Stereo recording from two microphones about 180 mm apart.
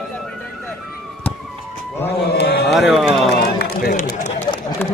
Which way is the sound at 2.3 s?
60° left (ahead or behind).